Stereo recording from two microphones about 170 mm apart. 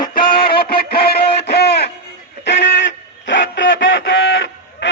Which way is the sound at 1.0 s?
70° left (ahead or behind).